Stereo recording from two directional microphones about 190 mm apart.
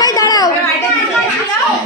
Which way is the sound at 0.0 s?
20° left (ahead or behind).